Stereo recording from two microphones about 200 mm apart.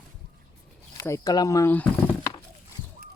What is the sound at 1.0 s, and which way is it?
Speech, 15° left (ahead or behind).